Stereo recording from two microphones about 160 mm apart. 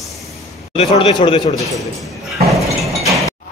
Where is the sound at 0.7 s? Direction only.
40° left (ahead or behind).